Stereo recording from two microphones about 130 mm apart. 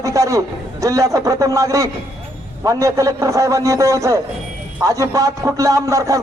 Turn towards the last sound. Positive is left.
turn(degrees=-25)  # may be behind; listen again after turning